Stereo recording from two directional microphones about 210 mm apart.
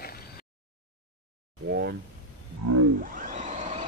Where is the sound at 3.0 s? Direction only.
40° right (ahead or behind).